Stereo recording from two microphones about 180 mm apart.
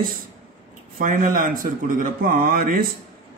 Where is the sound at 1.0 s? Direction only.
50° right (ahead or behind).